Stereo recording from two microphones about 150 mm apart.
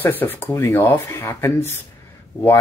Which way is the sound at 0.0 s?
15° left (ahead or behind).